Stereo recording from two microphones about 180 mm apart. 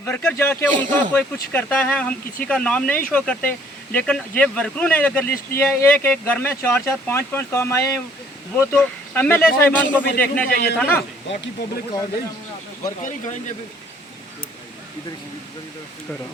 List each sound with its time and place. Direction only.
0.0 s speech: 10° left (ahead or behind)
10.5 s a man's voice: 60° left (ahead or behind)
10.8 s speech: 10° left (ahead or behind)
13.0 s speech: 45° left (ahead or behind)